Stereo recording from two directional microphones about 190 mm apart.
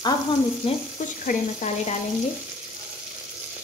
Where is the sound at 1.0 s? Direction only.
45° left (ahead or behind).